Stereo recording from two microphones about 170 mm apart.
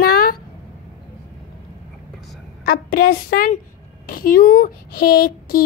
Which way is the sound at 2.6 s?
65° left (ahead or behind).